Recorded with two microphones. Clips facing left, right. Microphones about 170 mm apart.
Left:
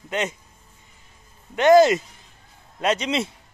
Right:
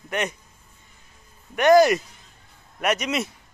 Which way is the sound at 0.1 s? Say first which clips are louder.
Left 1 dB; 20° left (ahead or behind).